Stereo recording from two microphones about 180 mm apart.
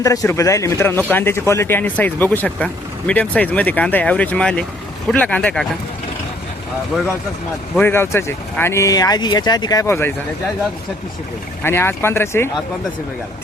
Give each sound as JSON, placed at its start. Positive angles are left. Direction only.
{"t": 0.0, "sound": "speech", "side_deg": 20}
{"t": 7.8, "sound": "speech", "side_deg": 10}
{"t": 11.6, "sound": "speech", "side_deg": 15}